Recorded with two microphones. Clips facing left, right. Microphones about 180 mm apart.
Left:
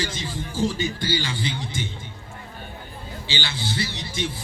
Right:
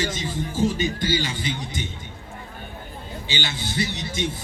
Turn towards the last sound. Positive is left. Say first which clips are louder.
# right 2 dB
turn(degrees=-20)  # may be behind; listen again after turning